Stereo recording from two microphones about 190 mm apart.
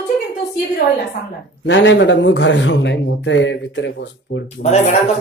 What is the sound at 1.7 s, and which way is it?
Speech, 70° left (ahead or behind).